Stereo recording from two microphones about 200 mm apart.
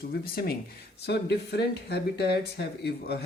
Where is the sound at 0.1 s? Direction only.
50° left (ahead or behind).